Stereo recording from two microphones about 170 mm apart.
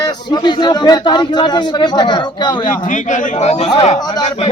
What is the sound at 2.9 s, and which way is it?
A man's voice, 50° left (ahead or behind).